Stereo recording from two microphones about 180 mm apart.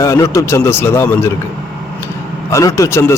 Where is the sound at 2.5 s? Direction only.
15° left (ahead or behind).